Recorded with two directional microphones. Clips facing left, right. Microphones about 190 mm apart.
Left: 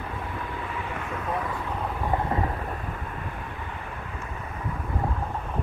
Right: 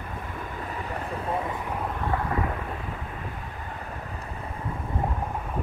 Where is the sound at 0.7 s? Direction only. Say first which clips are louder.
Even; 40° right (ahead or behind).